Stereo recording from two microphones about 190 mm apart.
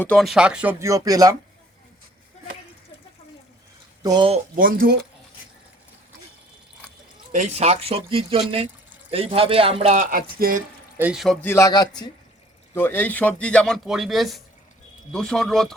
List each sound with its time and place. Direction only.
0.0 s speech: 5° left (ahead or behind); by 1.4 s 20° right (ahead or behind)
4.0 s speech: 25° right (ahead or behind)
4.5 s speech: 50° right (ahead or behind)
7.3 s speech: 35° right (ahead or behind); by 10.6 s 50° right (ahead or behind)
10.9 s a man's voice: 5° right (ahead or behind)
11.4 s a man's voice: 15° left (ahead or behind)